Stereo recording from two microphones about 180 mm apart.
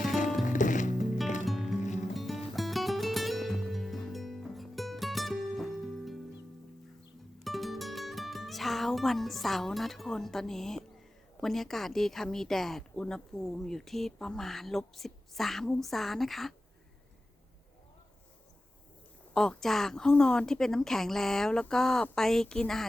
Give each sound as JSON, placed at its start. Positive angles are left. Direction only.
{"t": 0.4, "sound": "music", "side_deg": 45}
{"t": 1.5, "sound": "music", "side_deg": 0}
{"t": 1.8, "sound": "music", "side_deg": 40}
{"t": 2.1, "sound": "music", "side_deg": 0}
{"t": 7.4, "sound": "music", "side_deg": 0}
{"t": 11.3, "sound": "speech", "side_deg": 0}
{"t": 19.3, "sound": "speech", "side_deg": 5}